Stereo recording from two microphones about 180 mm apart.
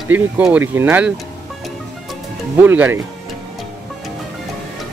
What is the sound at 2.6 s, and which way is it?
Speech, 10° right (ahead or behind).